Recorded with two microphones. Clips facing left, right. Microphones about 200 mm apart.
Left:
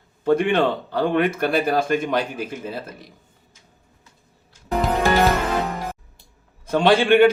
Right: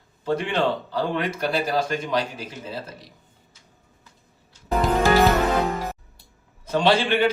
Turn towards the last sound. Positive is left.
turn(degrees=55)  # may be behind; listen again after turning